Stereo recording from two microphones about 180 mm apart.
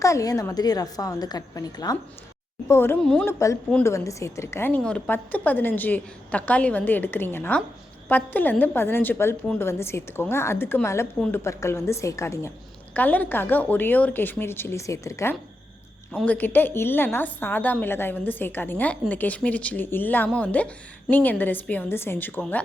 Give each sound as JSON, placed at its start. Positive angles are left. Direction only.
{"t": 0.0, "sound": "a woman's voice", "side_deg": 20}
{"t": 3.3, "sound": "a woman's voice", "side_deg": 15}